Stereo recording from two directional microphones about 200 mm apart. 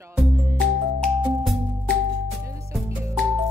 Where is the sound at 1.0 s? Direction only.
5° left (ahead or behind).